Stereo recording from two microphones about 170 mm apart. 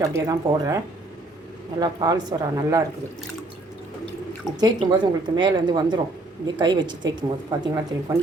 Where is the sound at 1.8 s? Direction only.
25° right (ahead or behind).